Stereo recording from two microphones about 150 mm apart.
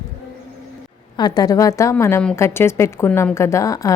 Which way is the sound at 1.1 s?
25° left (ahead or behind).